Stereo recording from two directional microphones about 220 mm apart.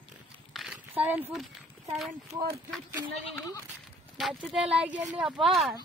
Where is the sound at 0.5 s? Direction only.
5° right (ahead or behind).